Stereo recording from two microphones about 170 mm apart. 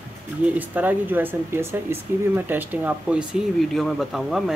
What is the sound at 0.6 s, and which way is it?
Speech, 10° right (ahead or behind).